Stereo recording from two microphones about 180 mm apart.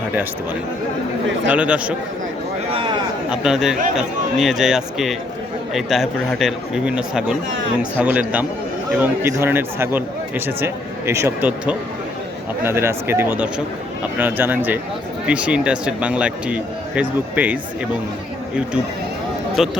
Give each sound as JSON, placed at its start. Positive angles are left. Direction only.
{"t": 1.5, "sound": "speech", "side_deg": -5}
{"t": 2.7, "sound": "a sound", "side_deg": -25}
{"t": 3.2, "sound": "speech", "side_deg": -5}
{"t": 19.5, "sound": "speech", "side_deg": -5}